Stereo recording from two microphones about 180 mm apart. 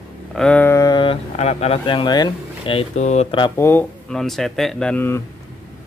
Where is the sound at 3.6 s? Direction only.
15° left (ahead or behind).